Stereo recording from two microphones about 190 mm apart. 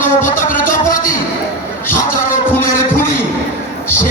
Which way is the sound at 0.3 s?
45° left (ahead or behind).